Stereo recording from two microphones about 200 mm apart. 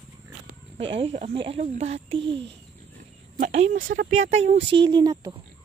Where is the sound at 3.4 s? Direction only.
35° right (ahead or behind); by 5.4 s 20° right (ahead or behind).